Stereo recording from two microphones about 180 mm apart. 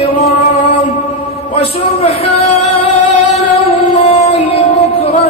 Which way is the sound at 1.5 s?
40° left (ahead or behind).